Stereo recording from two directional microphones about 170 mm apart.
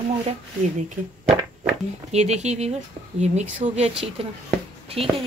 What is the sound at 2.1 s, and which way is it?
Speech, 40° right (ahead or behind).